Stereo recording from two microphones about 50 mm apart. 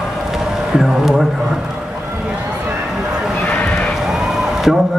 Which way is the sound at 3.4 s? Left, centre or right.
Left.